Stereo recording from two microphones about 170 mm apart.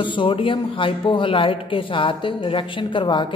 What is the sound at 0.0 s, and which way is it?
A man's voice, 30° left (ahead or behind).